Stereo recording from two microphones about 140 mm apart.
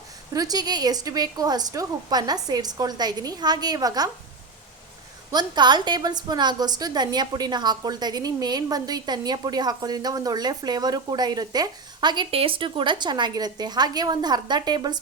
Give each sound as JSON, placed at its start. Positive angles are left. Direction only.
{"t": 0.3, "sound": "a woman's voice", "side_deg": -25}
{"t": 5.3, "sound": "a woman's voice", "side_deg": -30}